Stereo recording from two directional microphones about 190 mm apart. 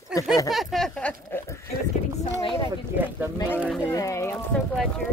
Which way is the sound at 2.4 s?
25° left (ahead or behind).